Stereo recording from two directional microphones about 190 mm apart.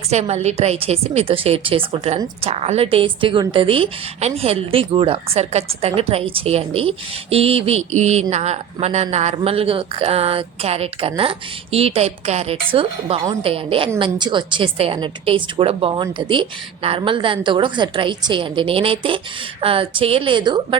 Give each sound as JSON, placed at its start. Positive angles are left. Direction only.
{"t": 0.1, "sound": "a woman's voice", "side_deg": -35}